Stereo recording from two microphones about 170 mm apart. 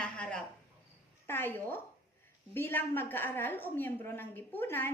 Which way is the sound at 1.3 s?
15° left (ahead or behind).